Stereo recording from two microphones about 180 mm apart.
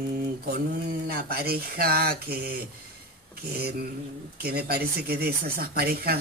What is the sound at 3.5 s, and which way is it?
Speech, 60° right (ahead or behind).